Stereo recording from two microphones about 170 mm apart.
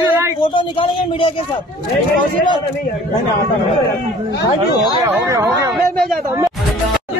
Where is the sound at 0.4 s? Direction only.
30° left (ahead or behind).